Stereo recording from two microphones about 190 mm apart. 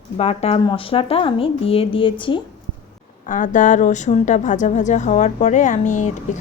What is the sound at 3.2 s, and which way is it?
A woman's voice, 40° left (ahead or behind).